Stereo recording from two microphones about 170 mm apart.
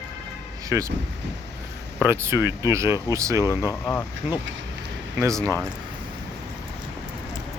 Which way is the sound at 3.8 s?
10° left (ahead or behind).